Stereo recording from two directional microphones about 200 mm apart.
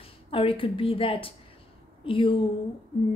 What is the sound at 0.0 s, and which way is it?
A woman's voice, 25° left (ahead or behind).